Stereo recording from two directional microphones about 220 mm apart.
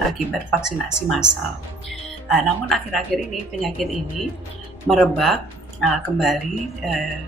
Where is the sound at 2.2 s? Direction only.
Centre (ahead or behind).